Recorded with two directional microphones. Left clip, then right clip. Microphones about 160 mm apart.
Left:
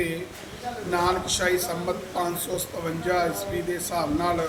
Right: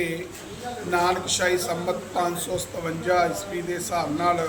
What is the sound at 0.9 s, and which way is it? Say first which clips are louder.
Speech: right 1 dB; 15° right (ahead or behind).